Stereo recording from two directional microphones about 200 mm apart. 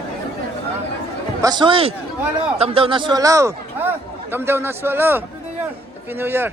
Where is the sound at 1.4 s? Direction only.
20° right (ahead or behind).